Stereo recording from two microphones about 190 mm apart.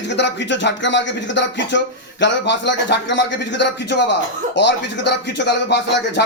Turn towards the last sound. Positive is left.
turn(degrees=65)  # may be behind; listen again after turning